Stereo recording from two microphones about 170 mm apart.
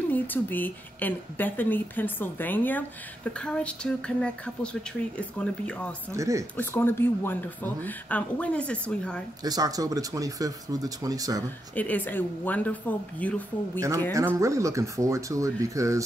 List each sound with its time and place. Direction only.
0.1 s speech: 10° left (ahead or behind)
6.1 s speech: 20° right (ahead or behind)
6.5 s speech: 10° left (ahead or behind)
9.4 s speech: 20° right (ahead or behind)
11.7 s speech: 10° left (ahead or behind)
13.7 s speech: 20° right (ahead or behind)